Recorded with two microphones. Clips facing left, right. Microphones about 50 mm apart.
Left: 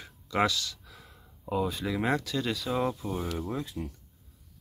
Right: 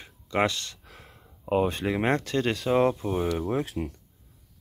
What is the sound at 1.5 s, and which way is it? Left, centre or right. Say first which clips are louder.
Speech: right 5 dB; right.